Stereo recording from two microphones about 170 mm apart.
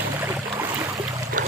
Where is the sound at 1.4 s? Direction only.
50° right (ahead or behind).